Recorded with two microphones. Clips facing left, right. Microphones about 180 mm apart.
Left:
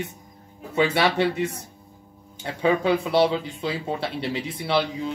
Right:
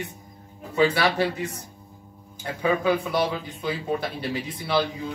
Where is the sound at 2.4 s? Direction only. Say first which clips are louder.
Left 2 dB; 25° left (ahead or behind).